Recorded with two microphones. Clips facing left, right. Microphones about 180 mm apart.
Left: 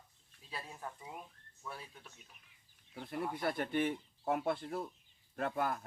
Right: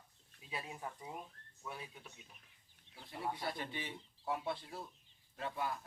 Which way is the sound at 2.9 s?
55° left (ahead or behind).